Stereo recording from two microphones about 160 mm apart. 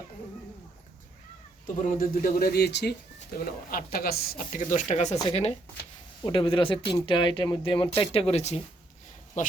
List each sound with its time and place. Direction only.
1.6 s speech: 55° left (ahead or behind); by 2.9 s 90° left
3.3 s speech: 65° left (ahead or behind); by 8.6 s 40° left (ahead or behind)